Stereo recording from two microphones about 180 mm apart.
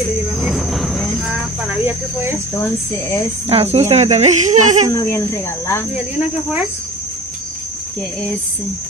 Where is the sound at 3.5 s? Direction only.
35° right (ahead or behind).